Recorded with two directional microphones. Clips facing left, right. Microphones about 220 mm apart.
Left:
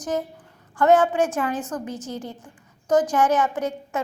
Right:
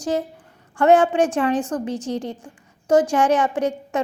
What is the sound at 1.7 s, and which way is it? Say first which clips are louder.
Speech: right 5 dB; 35° right (ahead or behind).